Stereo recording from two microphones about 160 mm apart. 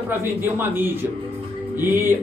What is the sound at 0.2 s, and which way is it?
Speech, 15° right (ahead or behind).